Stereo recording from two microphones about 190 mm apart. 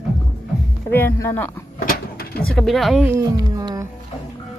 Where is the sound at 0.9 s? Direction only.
10° left (ahead or behind).